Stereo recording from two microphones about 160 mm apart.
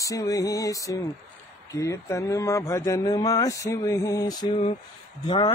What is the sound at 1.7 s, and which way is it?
Speech, 15° left (ahead or behind).